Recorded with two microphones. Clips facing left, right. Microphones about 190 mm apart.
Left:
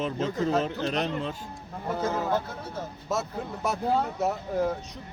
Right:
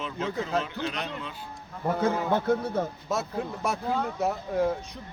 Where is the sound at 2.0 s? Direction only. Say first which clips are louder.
Right 4 dB; 60° right (ahead or behind).